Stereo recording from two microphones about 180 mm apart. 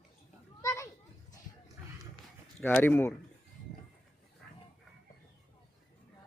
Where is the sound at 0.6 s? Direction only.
15° left (ahead or behind).